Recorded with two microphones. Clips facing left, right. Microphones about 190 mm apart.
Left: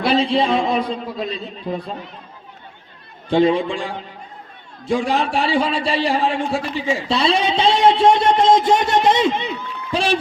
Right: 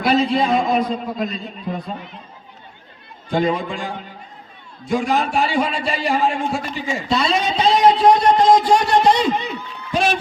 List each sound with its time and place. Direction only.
0.0 s a man's voice: 30° left (ahead or behind)
3.2 s a man's voice: 30° left (ahead or behind)